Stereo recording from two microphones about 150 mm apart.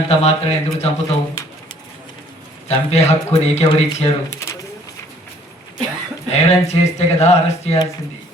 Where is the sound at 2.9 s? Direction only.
45° left (ahead or behind).